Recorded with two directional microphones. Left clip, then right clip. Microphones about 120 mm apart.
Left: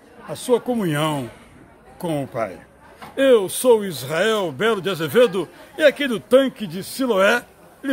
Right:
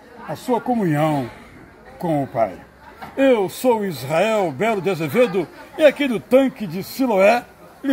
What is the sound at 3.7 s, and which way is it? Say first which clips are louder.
Speech: even; 25° left (ahead or behind).